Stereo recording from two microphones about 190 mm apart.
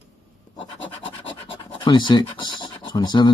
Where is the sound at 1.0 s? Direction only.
25° left (ahead or behind).